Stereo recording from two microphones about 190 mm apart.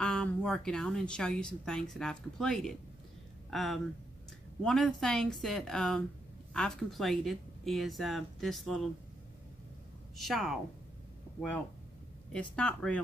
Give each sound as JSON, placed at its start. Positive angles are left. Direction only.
{"t": 0.0, "sound": "a woman's voice", "side_deg": 5}
{"t": 10.1, "sound": "a woman's voice", "side_deg": 0}
{"t": 12.3, "sound": "a woman's voice", "side_deg": 5}